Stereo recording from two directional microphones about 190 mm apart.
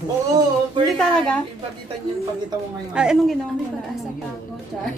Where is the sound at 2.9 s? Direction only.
5° right (ahead or behind).